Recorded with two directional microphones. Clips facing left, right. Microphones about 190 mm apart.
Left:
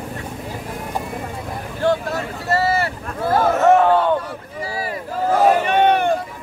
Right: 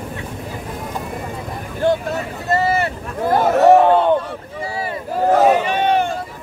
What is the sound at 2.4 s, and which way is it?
Boat, 20° right (ahead or behind).